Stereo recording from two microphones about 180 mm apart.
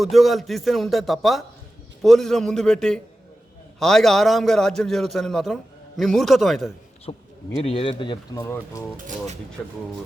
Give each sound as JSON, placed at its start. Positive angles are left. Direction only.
{"t": 0.0, "sound": "a man's voice", "side_deg": 0}
{"t": 7.0, "sound": "speech", "side_deg": 30}
{"t": 9.0, "sound": "speech", "side_deg": -45}
{"t": 9.6, "sound": "a man's voice", "side_deg": 5}